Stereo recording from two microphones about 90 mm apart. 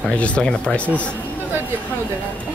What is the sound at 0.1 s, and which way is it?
Speech, 10° left (ahead or behind).